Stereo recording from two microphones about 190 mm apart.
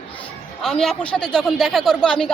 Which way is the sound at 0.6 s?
Centre (ahead or behind).